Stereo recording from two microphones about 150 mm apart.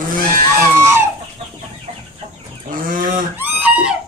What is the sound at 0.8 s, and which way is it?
Chicken, 20° right (ahead or behind).